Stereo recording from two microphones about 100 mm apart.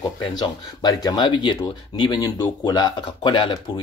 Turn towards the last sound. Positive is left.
turn(degrees=55)  # may be behind; listen again after turning